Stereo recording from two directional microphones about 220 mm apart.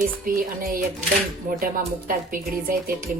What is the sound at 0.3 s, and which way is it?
A woman's voice, 40° right (ahead or behind).